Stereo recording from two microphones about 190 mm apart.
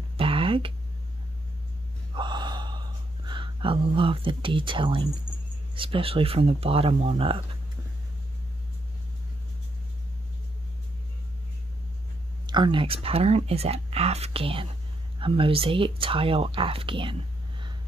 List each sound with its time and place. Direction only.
0.2 s a sound: 30° right (ahead or behind)
2.1 s gasp: 25° right (ahead or behind)
3.3 s speech: 25° right (ahead or behind)
12.4 s speech: 25° right (ahead or behind)